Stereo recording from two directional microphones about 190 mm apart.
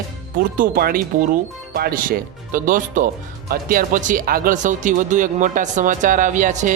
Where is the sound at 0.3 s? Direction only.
45° right (ahead or behind).